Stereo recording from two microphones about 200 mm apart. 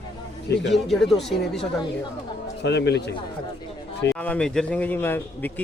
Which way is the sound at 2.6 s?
60° left (ahead or behind).